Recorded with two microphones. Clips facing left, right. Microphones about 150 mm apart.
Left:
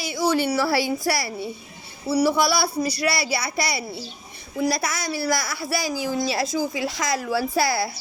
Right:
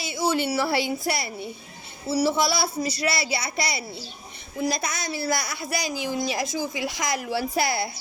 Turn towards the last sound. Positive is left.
turn(degrees=-20)  # may be behind; listen again after turning